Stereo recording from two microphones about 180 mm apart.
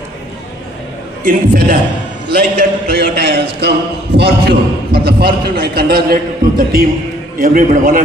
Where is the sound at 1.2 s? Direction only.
50° right (ahead or behind).